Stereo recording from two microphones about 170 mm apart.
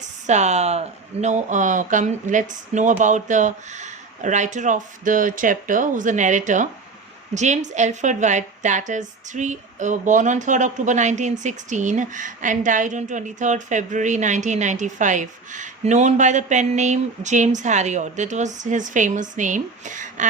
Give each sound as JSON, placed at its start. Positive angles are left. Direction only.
{"t": 0.3, "sound": "a woman's voice", "side_deg": -40}